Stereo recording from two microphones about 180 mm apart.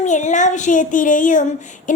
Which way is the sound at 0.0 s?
40° left (ahead or behind).